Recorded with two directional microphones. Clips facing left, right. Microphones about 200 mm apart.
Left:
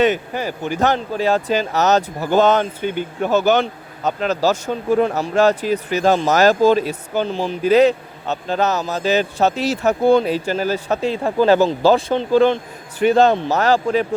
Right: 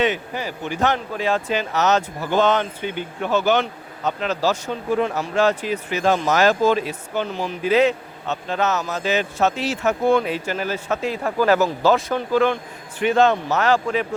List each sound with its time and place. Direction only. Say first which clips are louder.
0.0 s speech: left 5 dB; 45° left (ahead or behind)